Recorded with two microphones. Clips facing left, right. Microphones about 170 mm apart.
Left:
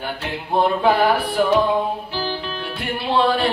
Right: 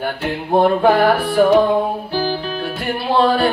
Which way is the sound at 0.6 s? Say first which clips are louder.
Right 4 dB; 45° right (ahead or behind).